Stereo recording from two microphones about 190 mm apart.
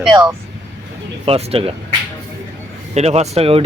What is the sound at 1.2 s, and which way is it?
Speech, 30° right (ahead or behind).